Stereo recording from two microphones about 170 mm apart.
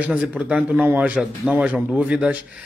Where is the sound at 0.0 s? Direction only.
5° right (ahead or behind).